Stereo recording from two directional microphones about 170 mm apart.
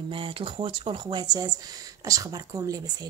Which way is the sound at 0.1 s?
30° right (ahead or behind).